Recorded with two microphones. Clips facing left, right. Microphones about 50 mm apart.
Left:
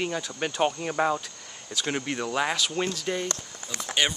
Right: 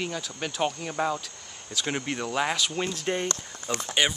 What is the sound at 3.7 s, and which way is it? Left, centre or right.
Speech, right.